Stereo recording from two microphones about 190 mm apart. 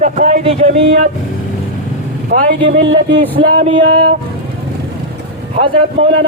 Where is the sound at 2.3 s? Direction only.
25° right (ahead or behind).